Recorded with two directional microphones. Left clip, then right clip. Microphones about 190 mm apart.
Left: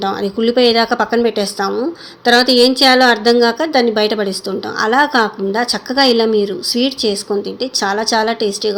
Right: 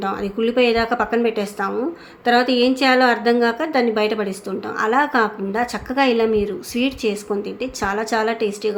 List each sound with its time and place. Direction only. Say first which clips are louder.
0.0 s a woman's voice: left 5 dB; 15° left (ahead or behind)